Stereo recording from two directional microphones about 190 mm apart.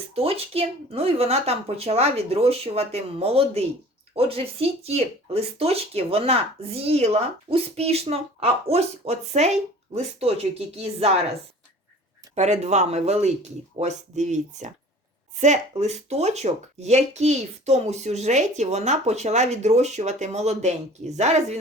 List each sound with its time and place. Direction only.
0.1 s speech: 30° right (ahead or behind)
12.3 s speech: 35° right (ahead or behind)